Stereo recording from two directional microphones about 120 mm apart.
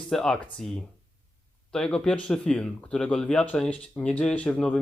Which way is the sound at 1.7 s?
5° left (ahead or behind).